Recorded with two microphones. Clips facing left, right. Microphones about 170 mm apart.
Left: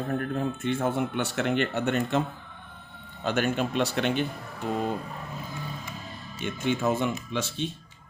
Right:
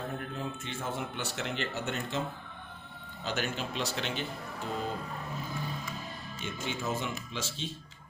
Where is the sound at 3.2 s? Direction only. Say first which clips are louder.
Left 8 dB; 55° left (ahead or behind).